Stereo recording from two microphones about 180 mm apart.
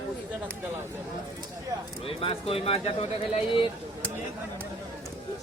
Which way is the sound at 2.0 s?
30° left (ahead or behind).